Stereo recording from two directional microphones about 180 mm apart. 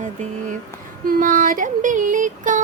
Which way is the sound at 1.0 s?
50° right (ahead or behind).